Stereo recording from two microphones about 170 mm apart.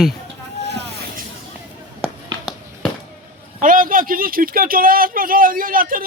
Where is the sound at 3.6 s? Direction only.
55° right (ahead or behind).